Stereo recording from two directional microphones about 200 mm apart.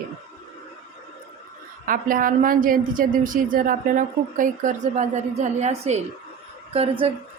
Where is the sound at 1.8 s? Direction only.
45° right (ahead or behind).